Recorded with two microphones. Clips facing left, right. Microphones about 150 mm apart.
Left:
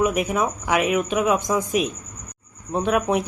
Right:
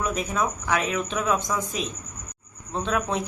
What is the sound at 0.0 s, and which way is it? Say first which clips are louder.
A man's voice: left 5 dB; 15° left (ahead or behind).